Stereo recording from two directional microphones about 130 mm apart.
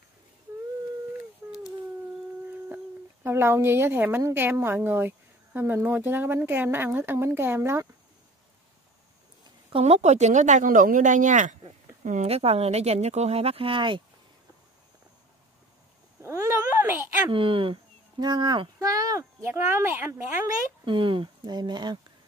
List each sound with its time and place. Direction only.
3.3 s a woman's voice: 20° right (ahead or behind)
9.7 s speech: 50° right (ahead or behind); by 12.3 s 70° right (ahead or behind)
12.3 s speech: 50° right (ahead or behind)
16.2 s a sound: 20° right (ahead or behind)
17.3 s speech: 45° right (ahead or behind); by 20.2 s 15° right (ahead or behind)
20.8 s speech: 40° right (ahead or behind)